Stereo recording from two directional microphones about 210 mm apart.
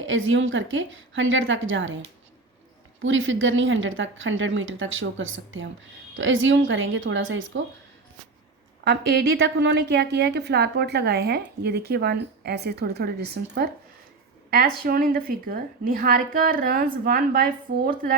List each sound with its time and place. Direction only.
0.0 s a woman's voice: 65° right (ahead or behind)
3.0 s a woman's voice: 65° right (ahead or behind)
8.8 s a woman's voice: 55° right (ahead or behind)
14.8 s a woman's voice: 45° right (ahead or behind)